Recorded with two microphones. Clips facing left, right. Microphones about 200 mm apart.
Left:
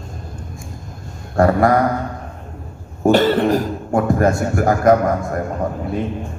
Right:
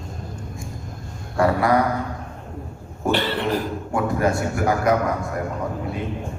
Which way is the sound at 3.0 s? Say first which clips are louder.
Left 9 dB; 45° left (ahead or behind).